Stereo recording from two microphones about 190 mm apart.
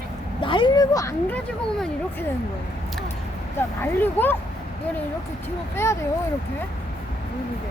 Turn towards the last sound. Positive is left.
turn(degrees=15)  # may be behind; listen again after turning